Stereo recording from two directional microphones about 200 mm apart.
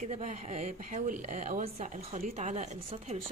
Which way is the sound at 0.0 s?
35° right (ahead or behind).